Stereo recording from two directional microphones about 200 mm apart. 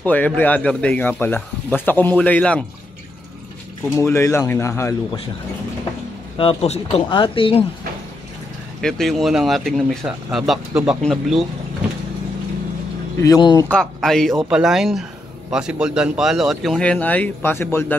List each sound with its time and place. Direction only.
0.0 s speech: 10° left (ahead or behind)
4.0 s speech: 15° left (ahead or behind)
6.3 s speech: 30° left (ahead or behind)
8.8 s speech: centre (ahead or behind)
13.2 s speech: 20° left (ahead or behind)
13.7 s speech: 5° left (ahead or behind)